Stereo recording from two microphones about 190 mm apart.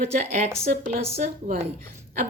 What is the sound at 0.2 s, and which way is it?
A woman's voice, 40° right (ahead or behind).